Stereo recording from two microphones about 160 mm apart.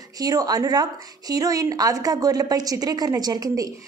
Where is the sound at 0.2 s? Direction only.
25° right (ahead or behind).